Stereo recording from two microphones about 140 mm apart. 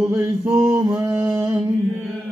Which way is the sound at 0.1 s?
15° right (ahead or behind).